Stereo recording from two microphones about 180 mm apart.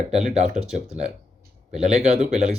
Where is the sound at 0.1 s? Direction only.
40° right (ahead or behind).